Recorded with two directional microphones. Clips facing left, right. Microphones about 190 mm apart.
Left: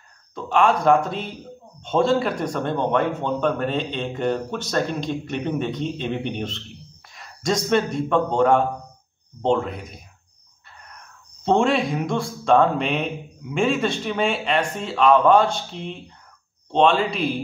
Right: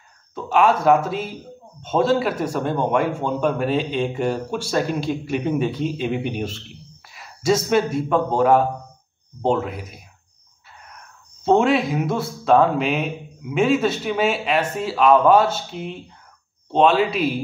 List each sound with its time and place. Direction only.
0.3 s a man's voice: 5° right (ahead or behind)
11.4 s speech: 5° right (ahead or behind)